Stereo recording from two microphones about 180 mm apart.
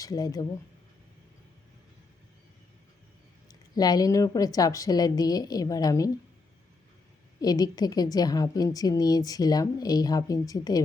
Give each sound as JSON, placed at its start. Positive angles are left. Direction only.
{"t": 0.0, "sound": "speech", "side_deg": 20}
{"t": 3.5, "sound": "a woman's voice", "side_deg": 20}
{"t": 7.4, "sound": "a woman's voice", "side_deg": 20}